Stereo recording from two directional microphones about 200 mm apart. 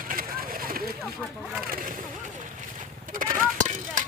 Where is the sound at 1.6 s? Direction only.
45° right (ahead or behind).